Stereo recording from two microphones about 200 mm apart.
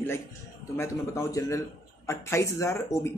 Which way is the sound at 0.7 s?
15° left (ahead or behind).